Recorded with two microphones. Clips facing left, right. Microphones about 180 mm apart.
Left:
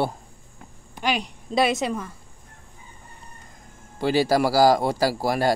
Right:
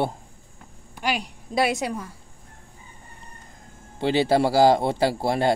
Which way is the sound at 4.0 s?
20° right (ahead or behind).